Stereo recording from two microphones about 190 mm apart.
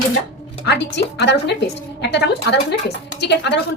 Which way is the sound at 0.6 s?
65° left (ahead or behind).